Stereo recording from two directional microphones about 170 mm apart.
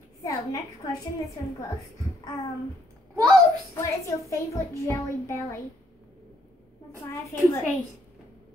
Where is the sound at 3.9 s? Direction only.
20° left (ahead or behind).